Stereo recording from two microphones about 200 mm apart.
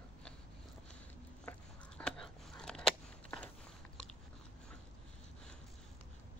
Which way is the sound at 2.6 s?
5° left (ahead or behind).